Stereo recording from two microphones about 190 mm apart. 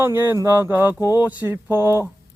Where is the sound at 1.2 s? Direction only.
10° right (ahead or behind).